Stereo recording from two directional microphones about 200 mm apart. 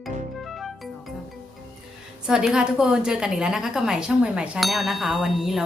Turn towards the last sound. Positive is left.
turn(degrees=0)  # may be behind; listen again after turning